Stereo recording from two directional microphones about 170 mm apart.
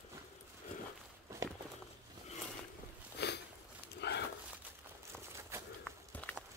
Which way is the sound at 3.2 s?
75° left (ahead or behind).